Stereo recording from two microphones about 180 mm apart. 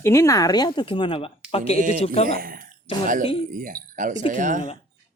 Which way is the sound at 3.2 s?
30° left (ahead or behind).